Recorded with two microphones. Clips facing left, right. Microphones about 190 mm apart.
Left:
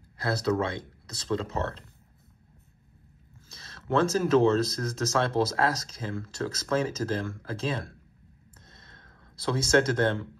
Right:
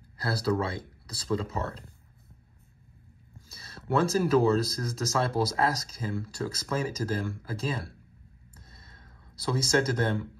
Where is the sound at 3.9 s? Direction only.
10° right (ahead or behind).